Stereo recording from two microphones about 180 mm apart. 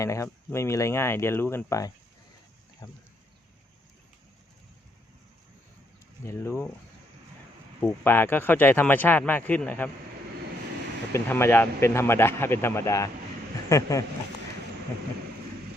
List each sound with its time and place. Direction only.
0.0 s speech: 15° left (ahead or behind)
6.2 s speech: 15° left (ahead or behind)
7.8 s speech: 10° left (ahead or behind)
11.1 s speech: 15° left (ahead or behind)